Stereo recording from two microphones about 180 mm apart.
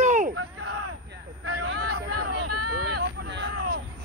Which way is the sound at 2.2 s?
60° right (ahead or behind).